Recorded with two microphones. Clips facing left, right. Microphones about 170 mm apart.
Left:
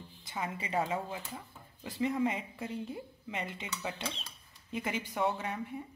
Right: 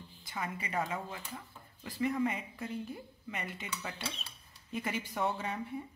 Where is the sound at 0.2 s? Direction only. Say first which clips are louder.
Left 1 dB; 25° left (ahead or behind).